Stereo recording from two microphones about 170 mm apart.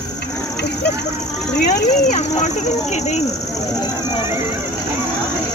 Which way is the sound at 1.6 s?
45° left (ahead or behind).